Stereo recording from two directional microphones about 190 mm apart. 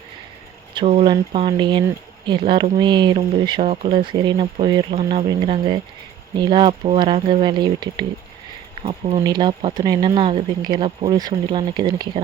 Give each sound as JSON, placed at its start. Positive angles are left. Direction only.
{"t": 0.7, "sound": "speech", "side_deg": -30}